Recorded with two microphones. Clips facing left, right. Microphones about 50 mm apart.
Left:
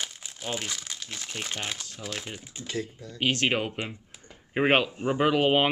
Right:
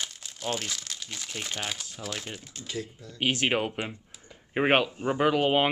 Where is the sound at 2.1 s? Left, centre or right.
Centre.